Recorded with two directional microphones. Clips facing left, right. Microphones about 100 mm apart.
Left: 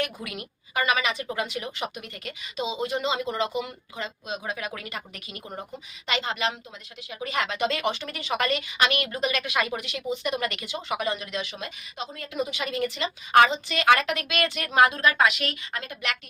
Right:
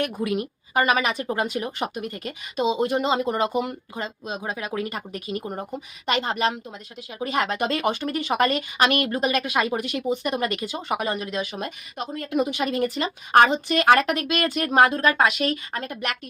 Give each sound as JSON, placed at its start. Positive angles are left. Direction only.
{"t": 0.3, "sound": "speech", "side_deg": -40}
{"t": 2.6, "sound": "speech", "side_deg": -50}
{"t": 5.7, "sound": "speech", "side_deg": -50}
{"t": 7.3, "sound": "speech", "side_deg": -45}